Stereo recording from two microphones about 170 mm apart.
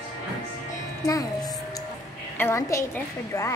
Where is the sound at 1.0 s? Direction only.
20° left (ahead or behind).